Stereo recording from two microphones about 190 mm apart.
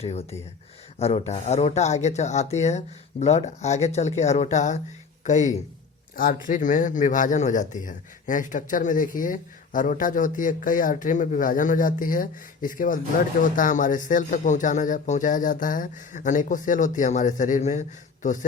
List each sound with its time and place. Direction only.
0.0 s a man's voice: 35° left (ahead or behind)